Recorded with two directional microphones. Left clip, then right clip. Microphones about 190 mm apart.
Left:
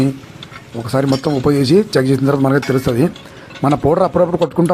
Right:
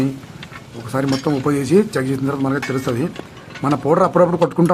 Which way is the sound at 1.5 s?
20° left (ahead or behind).